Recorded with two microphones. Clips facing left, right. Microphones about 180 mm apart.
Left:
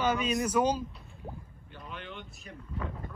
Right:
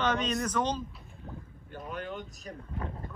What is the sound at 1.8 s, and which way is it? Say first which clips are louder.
Vehicle: right 5 dB; 45° right (ahead or behind).